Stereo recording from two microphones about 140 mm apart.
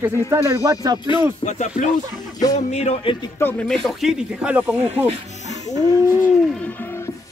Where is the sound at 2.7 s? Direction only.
50° left (ahead or behind).